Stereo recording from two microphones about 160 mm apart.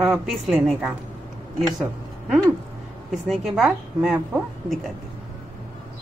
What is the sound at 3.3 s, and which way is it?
A woman's voice, centre (ahead or behind).